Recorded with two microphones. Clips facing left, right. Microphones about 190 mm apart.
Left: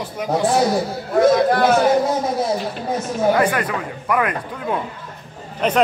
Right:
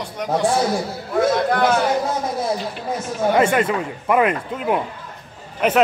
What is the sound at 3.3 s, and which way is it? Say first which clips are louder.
Speech: right 2 dB; 25° right (ahead or behind).